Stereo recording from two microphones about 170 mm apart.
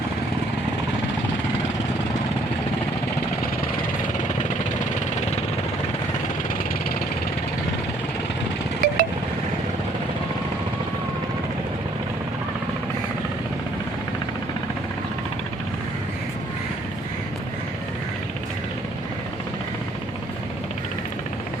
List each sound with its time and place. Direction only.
8.8 s vehicle: 55° right (ahead or behind)